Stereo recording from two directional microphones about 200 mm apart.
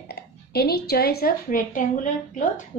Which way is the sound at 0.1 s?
50° left (ahead or behind).